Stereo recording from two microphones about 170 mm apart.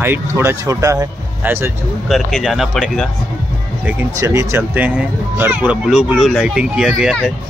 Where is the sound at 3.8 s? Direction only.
15° right (ahead or behind).